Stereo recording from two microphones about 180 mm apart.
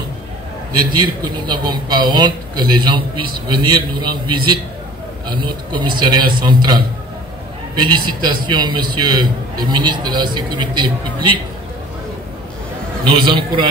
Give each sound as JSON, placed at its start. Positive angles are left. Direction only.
{"t": 0.8, "sound": "a man's voice", "side_deg": -25}
{"t": 13.1, "sound": "a man's voice", "side_deg": -25}